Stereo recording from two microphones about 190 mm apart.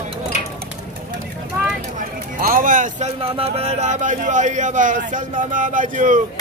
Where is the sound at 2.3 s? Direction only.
45° right (ahead or behind).